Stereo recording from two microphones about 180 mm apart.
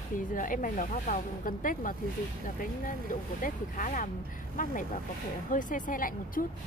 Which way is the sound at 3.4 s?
45° left (ahead or behind).